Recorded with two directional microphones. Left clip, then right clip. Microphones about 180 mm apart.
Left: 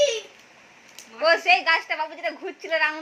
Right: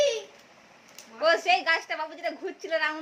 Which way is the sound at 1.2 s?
15° right (ahead or behind).